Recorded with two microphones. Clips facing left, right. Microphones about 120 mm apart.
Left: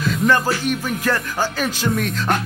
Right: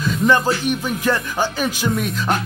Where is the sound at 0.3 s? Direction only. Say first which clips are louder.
Right 2 dB; 20° right (ahead or behind).